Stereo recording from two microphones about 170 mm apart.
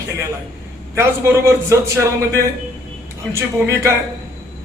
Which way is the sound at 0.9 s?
15° right (ahead or behind).